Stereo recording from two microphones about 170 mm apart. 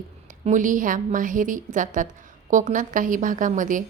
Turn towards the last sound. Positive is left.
turn(degrees=-50)  # may be behind; listen again after turning